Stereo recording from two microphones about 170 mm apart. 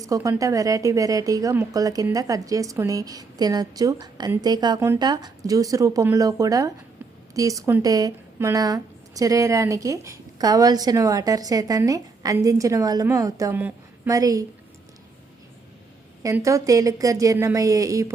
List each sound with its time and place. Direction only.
0.0 s speech: 20° right (ahead or behind)
16.2 s speech: 20° right (ahead or behind)